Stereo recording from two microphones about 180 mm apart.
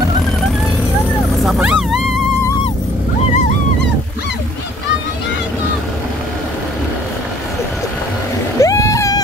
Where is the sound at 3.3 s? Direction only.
45° left (ahead or behind).